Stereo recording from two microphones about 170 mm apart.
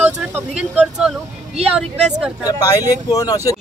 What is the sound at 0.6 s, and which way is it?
A man's voice, 5° right (ahead or behind).